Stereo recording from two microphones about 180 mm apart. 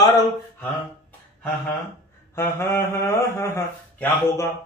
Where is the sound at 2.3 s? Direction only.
15° left (ahead or behind).